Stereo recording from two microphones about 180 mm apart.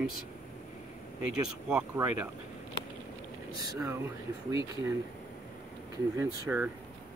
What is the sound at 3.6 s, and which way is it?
Speech, 15° right (ahead or behind).